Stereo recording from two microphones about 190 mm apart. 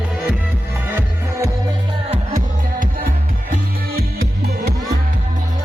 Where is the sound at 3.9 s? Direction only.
55° right (ahead or behind).